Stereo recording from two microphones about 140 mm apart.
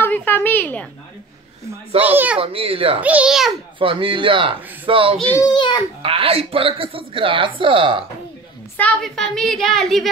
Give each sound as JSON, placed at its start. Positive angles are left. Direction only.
{"t": 0.0, "sound": "a woman's voice", "side_deg": 15}
{"t": 2.0, "sound": "a child's voice", "side_deg": -10}
{"t": 2.3, "sound": "a woman's voice", "side_deg": -40}
{"t": 3.0, "sound": "a child's voice", "side_deg": -10}
{"t": 3.8, "sound": "a woman's voice", "side_deg": -40}
{"t": 5.4, "sound": "a child's voice", "side_deg": 30}
{"t": 6.0, "sound": "a woman's voice", "side_deg": -40}
{"t": 8.7, "sound": "a woman's voice", "side_deg": 5}